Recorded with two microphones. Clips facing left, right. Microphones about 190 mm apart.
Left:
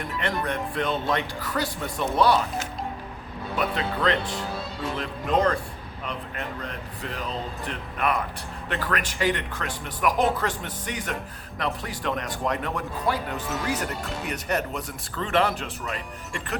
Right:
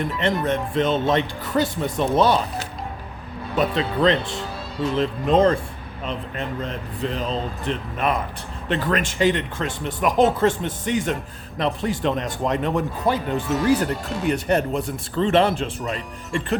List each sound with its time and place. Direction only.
0.0 s speech: 25° right (ahead or behind)
3.5 s speech: 25° right (ahead or behind)